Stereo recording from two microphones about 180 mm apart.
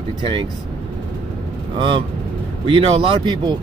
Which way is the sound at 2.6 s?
30° right (ahead or behind).